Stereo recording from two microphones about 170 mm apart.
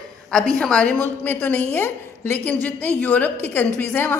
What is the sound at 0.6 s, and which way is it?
A woman's voice, 5° left (ahead or behind).